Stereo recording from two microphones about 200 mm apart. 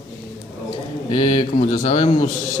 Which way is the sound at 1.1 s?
30° left (ahead or behind).